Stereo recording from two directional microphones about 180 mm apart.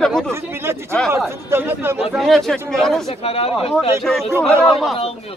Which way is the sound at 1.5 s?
10° right (ahead or behind).